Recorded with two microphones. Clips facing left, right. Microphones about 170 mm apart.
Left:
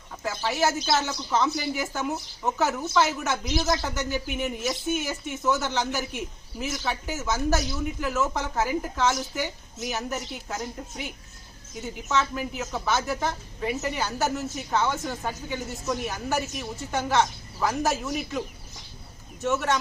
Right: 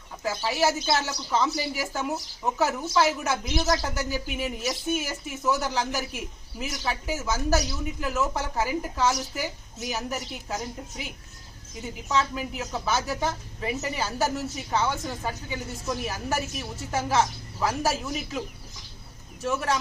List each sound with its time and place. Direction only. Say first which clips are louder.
0.3 s speech: right 1 dB; centre (ahead or behind)
12.4 s speech: left 1 dB; centre (ahead or behind)